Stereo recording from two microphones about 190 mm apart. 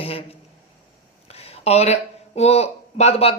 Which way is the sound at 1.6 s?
35° left (ahead or behind).